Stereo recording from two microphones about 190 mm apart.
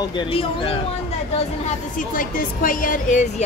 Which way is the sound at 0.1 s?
25° left (ahead or behind).